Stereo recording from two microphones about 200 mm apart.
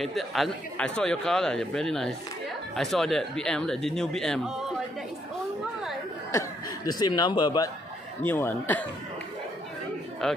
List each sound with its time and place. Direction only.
0.0 s a man's voice: centre (ahead or behind)
6.9 s speech: 20° left (ahead or behind)
10.2 s a man's voice: centre (ahead or behind)